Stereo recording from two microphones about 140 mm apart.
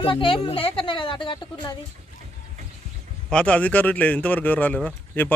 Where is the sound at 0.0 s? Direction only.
40° left (ahead or behind).